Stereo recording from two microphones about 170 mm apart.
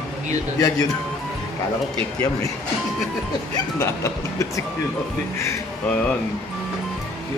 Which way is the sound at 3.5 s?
20° left (ahead or behind).